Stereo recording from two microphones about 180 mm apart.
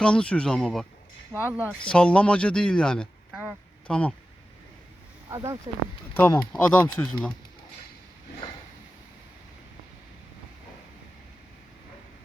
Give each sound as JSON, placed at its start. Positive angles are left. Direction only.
{"t": 0.0, "sound": "speech", "side_deg": 5}
{"t": 1.3, "sound": "speech", "side_deg": -10}
{"t": 1.9, "sound": "speech", "side_deg": 5}
{"t": 5.3, "sound": "speech", "side_deg": -20}
{"t": 6.1, "sound": "speech", "side_deg": 10}